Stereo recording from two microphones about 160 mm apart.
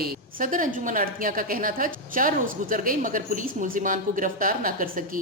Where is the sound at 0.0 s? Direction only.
60° right (ahead or behind).